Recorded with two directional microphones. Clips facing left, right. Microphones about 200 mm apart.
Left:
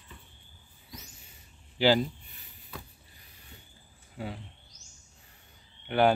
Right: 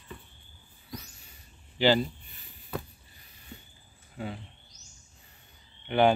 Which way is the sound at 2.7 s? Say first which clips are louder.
Right 9 dB; 55° right (ahead or behind).